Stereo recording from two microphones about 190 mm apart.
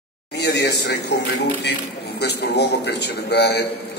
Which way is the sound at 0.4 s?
60° left (ahead or behind).